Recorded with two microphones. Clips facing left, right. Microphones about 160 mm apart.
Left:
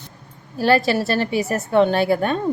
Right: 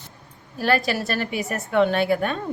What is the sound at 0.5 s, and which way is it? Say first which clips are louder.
A woman's voice: left 5 dB; 30° left (ahead or behind).